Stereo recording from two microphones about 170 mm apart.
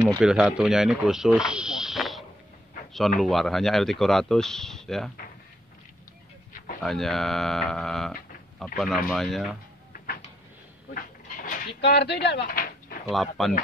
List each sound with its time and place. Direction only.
0.2 s speech: 5° right (ahead or behind)
6.8 s speech: centre (ahead or behind)
10.9 s goat: 55° left (ahead or behind)
11.8 s speech: 80° left; by 12.7 s 55° left (ahead or behind)
13.1 s speech: centre (ahead or behind)